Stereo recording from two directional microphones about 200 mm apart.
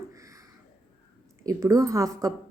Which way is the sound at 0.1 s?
15° right (ahead or behind).